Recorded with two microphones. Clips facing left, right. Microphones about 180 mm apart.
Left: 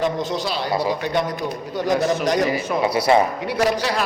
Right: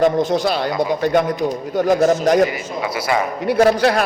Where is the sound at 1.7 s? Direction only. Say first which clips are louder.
Right 5 dB; 50° right (ahead or behind).